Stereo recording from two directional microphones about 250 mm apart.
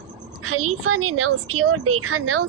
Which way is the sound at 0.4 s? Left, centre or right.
Right.